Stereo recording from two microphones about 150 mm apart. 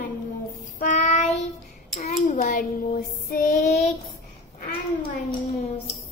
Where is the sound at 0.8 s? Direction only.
55° left (ahead or behind).